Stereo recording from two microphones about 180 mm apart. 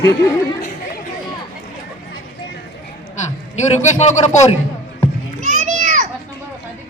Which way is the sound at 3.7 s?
40° left (ahead or behind).